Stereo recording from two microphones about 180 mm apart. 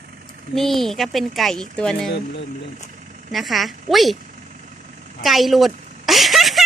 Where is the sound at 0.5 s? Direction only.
Centre (ahead or behind).